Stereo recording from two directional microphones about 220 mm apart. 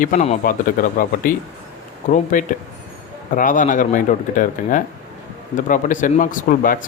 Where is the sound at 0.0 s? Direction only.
35° left (ahead or behind).